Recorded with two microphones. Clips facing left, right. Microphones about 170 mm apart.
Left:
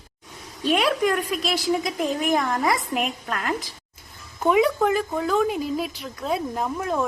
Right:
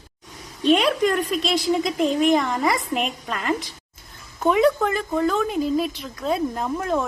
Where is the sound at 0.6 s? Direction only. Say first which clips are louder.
Right 3 dB; 5° left (ahead or behind).